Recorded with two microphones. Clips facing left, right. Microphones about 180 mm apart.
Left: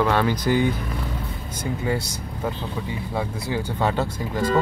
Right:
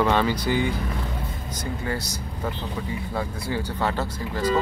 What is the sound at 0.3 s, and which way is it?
Speech, 15° right (ahead or behind).